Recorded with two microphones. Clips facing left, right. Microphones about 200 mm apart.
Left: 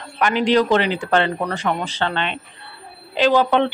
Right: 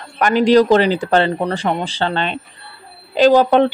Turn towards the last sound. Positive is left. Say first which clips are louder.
# right 5 dB
turn(degrees=-40)  # may be behind; listen again after turning